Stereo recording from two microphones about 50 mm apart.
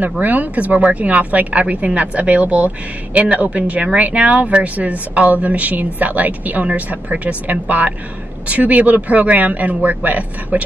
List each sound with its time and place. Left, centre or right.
0.2 s a woman's voice: right